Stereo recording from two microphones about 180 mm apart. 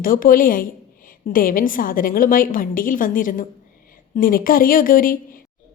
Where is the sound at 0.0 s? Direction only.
50° left (ahead or behind).